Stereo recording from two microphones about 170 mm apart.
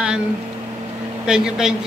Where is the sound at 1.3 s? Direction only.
5° right (ahead or behind).